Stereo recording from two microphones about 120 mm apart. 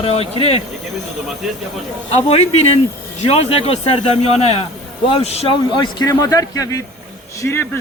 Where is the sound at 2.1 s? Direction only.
60° left (ahead or behind).